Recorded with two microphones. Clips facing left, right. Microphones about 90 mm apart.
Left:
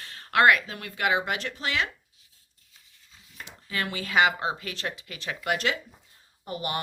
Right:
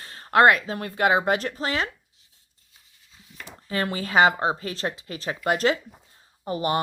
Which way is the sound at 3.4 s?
35° right (ahead or behind).